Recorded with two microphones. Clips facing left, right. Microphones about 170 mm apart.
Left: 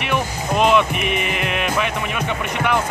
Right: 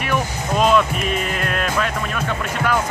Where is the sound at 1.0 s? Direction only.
65° left (ahead or behind).